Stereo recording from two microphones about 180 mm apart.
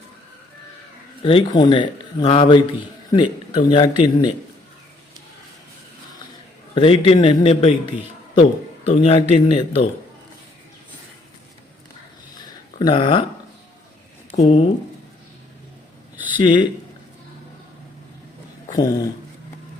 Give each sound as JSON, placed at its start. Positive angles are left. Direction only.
{"t": 1.2, "sound": "a man's voice", "side_deg": 30}
{"t": 6.7, "sound": "a man's voice", "side_deg": 30}
{"t": 8.9, "sound": "a man's voice", "side_deg": 35}
{"t": 12.8, "sound": "a man's voice", "side_deg": 25}
{"t": 14.3, "sound": "speech", "side_deg": 35}
{"t": 16.4, "sound": "a man's voice", "side_deg": 25}
{"t": 18.8, "sound": "a man's voice", "side_deg": 20}